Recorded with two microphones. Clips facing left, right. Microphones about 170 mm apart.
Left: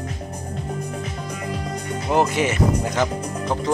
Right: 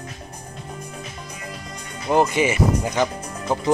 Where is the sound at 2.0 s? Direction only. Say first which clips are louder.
Right 1 dB; centre (ahead or behind).